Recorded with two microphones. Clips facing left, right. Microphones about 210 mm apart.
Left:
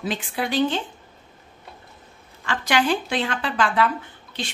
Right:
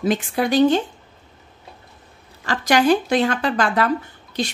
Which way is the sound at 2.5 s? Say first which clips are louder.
Right 5 dB; 40° right (ahead or behind).